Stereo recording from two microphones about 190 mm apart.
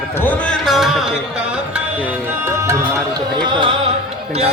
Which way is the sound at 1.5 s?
5° right (ahead or behind).